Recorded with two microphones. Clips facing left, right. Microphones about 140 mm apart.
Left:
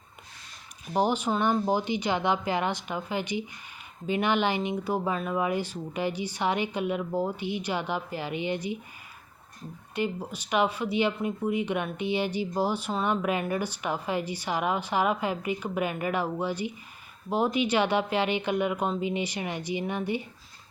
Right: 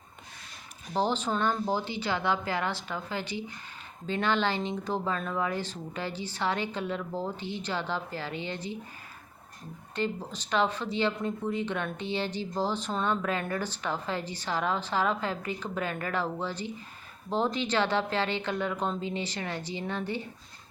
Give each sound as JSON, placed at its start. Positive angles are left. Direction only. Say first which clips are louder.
{"t": 0.9, "sound": "speech", "louder": "left 3 dB", "side_deg": 15}
{"t": 9.9, "sound": "speech", "louder": "left 2 dB", "side_deg": 10}